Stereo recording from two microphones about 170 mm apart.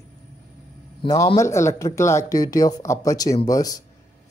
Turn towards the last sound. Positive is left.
turn(degrees=20)  # may be behind; listen again after turning